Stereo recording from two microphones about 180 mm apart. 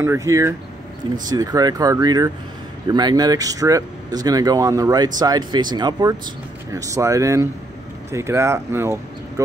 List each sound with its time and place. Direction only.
0.0 s speech: 15° right (ahead or behind)